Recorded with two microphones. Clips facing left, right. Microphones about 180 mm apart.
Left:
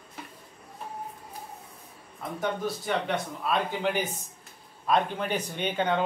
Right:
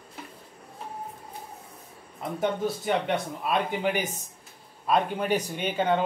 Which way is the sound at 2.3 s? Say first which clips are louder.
Right 3 dB; 20° right (ahead or behind).